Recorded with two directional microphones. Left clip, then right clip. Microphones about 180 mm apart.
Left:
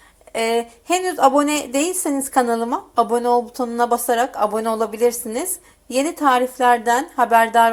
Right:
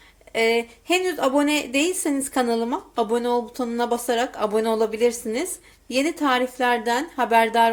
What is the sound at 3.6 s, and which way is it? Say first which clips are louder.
Speech: left 5 dB; 15° right (ahead or behind).